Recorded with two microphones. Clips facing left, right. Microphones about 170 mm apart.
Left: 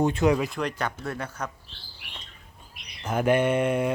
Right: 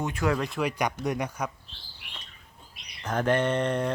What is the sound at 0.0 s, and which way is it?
Speech, 25° left (ahead or behind).